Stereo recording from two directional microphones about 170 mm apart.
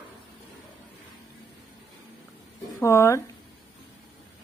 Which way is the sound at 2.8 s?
15° left (ahead or behind).